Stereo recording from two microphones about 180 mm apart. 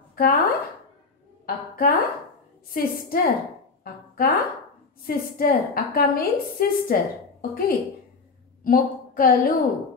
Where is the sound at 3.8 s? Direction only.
55° left (ahead or behind).